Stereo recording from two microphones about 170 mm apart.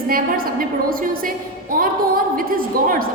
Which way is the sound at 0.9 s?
55° right (ahead or behind).